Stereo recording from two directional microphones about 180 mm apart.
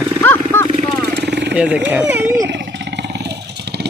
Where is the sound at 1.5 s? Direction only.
5° right (ahead or behind).